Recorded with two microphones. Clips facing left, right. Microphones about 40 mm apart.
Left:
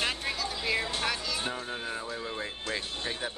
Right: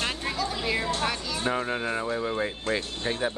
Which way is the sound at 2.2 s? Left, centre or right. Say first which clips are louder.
Right 8 dB; centre.